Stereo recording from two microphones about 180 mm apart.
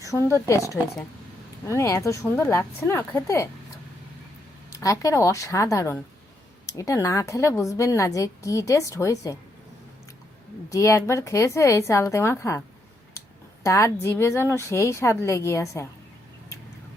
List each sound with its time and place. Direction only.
0.0 s a sound: 20° left (ahead or behind)
0.3 s a woman's voice: 15° left (ahead or behind)
4.7 s a woman's voice: 20° left (ahead or behind)
10.7 s a woman's voice: 15° left (ahead or behind)
13.7 s a woman's voice: 15° left (ahead or behind)